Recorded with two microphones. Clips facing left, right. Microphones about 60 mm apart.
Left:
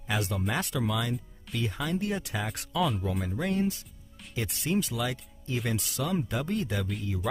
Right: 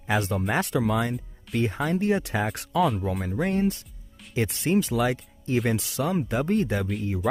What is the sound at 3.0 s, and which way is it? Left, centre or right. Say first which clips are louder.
Speech: right 3 dB; right.